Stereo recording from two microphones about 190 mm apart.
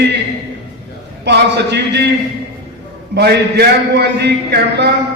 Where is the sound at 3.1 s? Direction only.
60° right (ahead or behind).